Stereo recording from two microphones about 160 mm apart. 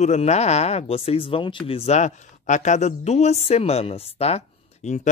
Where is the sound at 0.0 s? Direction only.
45° left (ahead or behind).